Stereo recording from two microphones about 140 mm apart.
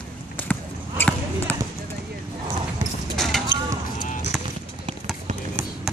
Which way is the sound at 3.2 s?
5° left (ahead or behind).